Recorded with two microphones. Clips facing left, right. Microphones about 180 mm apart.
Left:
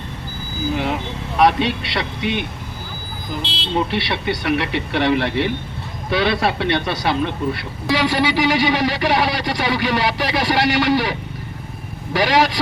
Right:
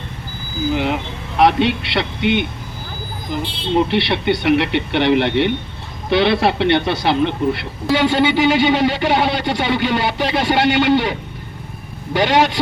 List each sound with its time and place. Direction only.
1.4 s speech: 25° right (ahead or behind)
3.4 s speech: 75° left (ahead or behind)
3.9 s speech: 25° right (ahead or behind)
12.1 s speech: 25° right (ahead or behind)